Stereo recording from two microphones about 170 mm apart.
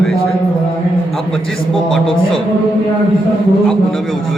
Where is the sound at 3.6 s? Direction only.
Centre (ahead or behind).